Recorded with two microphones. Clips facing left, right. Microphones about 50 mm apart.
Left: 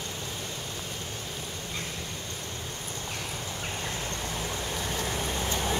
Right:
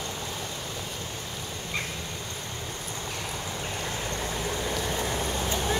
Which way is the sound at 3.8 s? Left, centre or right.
Centre.